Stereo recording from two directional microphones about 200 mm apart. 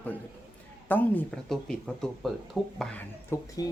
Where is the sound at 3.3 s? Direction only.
15° left (ahead or behind).